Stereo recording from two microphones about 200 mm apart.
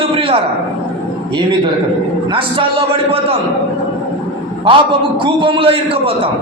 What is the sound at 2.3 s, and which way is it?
Speech, 25° right (ahead or behind).